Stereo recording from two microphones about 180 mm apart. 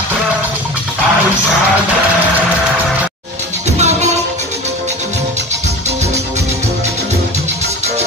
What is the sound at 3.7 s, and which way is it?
Music, 40° right (ahead or behind).